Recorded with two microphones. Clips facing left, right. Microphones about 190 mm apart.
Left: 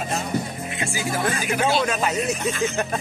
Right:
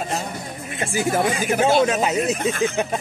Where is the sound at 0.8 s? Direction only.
50° right (ahead or behind).